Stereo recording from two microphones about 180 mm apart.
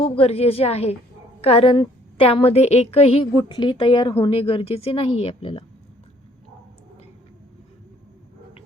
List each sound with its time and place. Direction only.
0.0 s a woman's voice: 35° left (ahead or behind)